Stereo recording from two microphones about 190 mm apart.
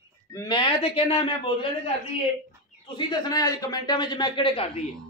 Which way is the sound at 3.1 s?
20° left (ahead or behind).